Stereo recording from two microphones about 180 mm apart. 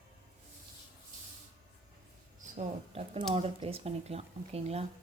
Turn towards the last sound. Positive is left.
turn(degrees=-35)  # may be behind; listen again after turning